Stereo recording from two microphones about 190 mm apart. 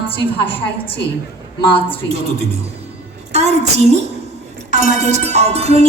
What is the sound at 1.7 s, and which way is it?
Speech, 30° left (ahead or behind).